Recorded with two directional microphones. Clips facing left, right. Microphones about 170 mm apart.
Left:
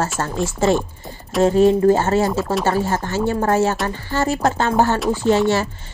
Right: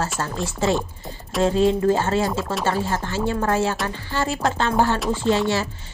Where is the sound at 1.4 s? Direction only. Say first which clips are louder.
Left 5 dB; 45° left (ahead or behind).